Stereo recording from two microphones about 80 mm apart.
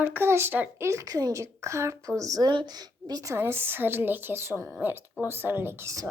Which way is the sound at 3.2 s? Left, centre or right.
Right.